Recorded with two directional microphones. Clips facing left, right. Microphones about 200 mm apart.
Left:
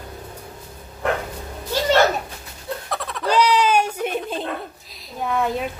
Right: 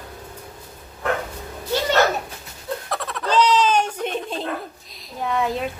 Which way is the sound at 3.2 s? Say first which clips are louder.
Even; 10° left (ahead or behind).